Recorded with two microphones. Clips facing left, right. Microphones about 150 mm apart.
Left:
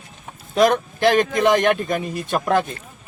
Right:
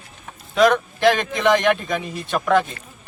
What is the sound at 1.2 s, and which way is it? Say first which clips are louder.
Speech: left 2 dB; 45° left (ahead or behind).